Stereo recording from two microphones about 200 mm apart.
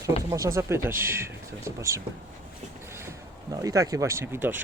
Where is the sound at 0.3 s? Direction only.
15° right (ahead or behind).